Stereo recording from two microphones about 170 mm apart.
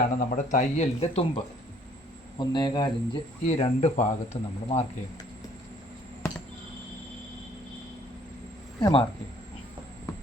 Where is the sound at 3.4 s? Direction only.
40° left (ahead or behind).